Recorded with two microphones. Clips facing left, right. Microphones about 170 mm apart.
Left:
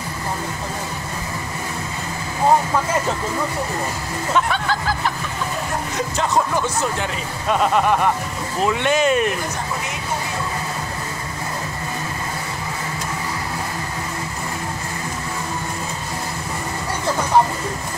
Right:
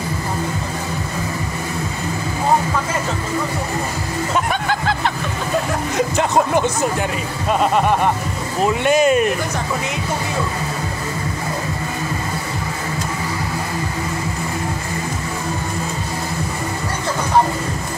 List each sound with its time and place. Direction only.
4.6 s music: 65° right (ahead or behind)
6.3 s speech: 20° right (ahead or behind)
7.4 s speech: centre (ahead or behind)